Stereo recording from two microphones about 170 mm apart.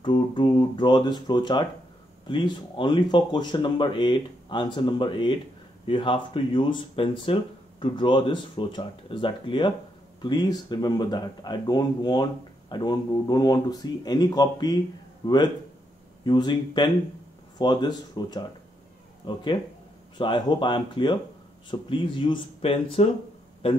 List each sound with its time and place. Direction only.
0.0 s speech: 30° left (ahead or behind)